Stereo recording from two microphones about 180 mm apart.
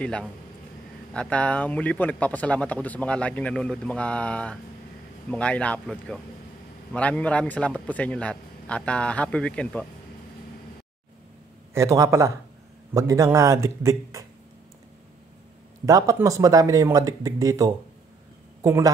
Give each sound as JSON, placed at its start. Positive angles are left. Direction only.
{"t": 0.0, "sound": "a man's voice", "side_deg": 5}
{"t": 11.7, "sound": "speech", "side_deg": -15}
{"t": 15.8, "sound": "speech", "side_deg": -20}